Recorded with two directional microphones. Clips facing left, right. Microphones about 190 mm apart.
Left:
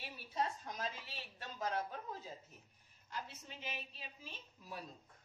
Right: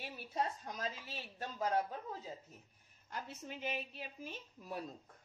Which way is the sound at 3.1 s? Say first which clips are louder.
Right 3 dB; 50° right (ahead or behind).